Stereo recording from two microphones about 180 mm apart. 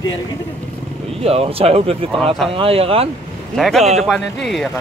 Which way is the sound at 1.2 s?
35° right (ahead or behind).